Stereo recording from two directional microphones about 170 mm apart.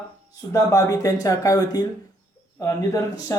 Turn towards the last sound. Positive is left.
turn(degrees=20)  # may be behind; listen again after turning